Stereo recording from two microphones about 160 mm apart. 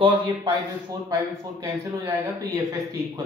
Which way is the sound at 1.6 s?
20° right (ahead or behind).